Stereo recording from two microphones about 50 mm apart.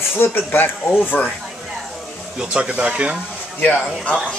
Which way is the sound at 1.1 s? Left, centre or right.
Left.